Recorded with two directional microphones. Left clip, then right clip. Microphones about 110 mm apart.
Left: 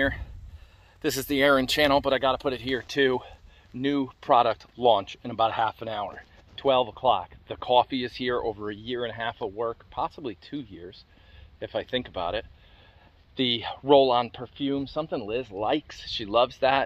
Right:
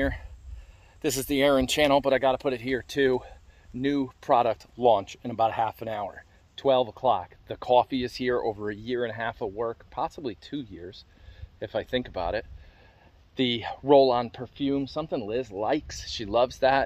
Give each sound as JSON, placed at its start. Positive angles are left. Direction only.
{"t": 1.0, "sound": "speech", "side_deg": -35}
{"t": 6.6, "sound": "speech", "side_deg": -45}
{"t": 11.6, "sound": "speech", "side_deg": -55}